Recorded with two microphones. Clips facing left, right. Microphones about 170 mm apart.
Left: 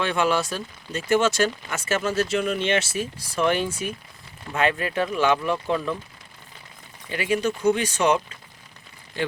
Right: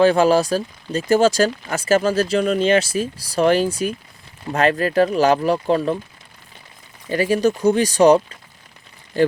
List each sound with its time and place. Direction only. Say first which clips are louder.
0.0 s speech: right 9 dB; 35° right (ahead or behind)
7.1 s speech: right 7 dB; 40° right (ahead or behind)